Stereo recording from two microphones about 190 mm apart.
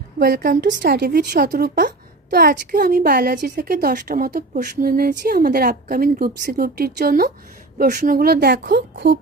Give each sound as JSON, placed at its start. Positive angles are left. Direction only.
{"t": 0.2, "sound": "a woman's voice", "side_deg": -50}